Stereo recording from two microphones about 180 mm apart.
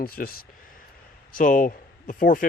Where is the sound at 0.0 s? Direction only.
55° left (ahead or behind).